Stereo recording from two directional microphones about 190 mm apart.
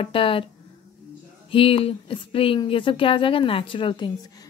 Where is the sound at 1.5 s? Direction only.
30° left (ahead or behind).